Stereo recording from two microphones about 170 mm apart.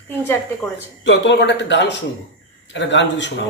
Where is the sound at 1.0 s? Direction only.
90° left.